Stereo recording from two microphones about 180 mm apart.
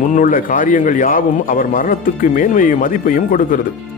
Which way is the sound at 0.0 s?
50° left (ahead or behind).